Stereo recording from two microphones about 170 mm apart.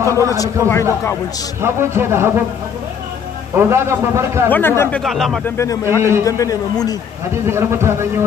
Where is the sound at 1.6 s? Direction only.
15° right (ahead or behind).